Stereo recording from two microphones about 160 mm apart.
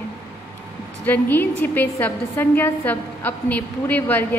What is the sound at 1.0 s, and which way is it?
A woman's voice, 10° left (ahead or behind).